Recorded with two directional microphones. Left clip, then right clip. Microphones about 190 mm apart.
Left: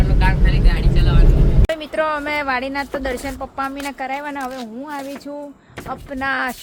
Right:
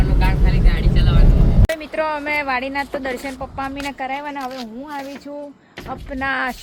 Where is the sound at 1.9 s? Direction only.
15° left (ahead or behind).